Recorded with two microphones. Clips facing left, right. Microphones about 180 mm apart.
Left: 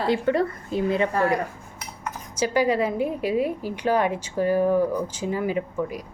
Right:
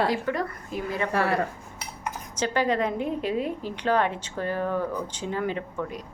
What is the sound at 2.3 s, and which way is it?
A woman's voice, 10° left (ahead or behind).